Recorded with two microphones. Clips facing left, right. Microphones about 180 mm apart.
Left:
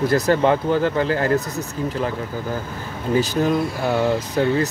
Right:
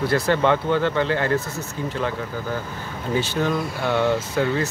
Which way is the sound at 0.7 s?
40° left (ahead or behind).